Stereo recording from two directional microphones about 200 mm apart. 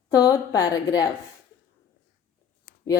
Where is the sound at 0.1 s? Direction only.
15° left (ahead or behind).